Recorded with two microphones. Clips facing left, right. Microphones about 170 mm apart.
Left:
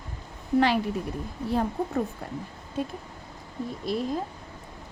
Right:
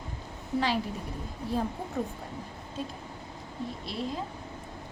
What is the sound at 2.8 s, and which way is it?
Speech, 60° left (ahead or behind).